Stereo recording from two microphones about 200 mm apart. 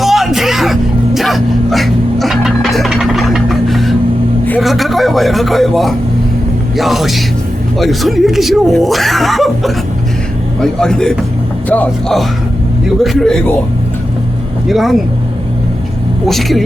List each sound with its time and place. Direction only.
0.0 s music: centre (ahead or behind)
4.4 s a man's voice: 5° left (ahead or behind)
14.7 s speech: centre (ahead or behind)
16.2 s speech: centre (ahead or behind)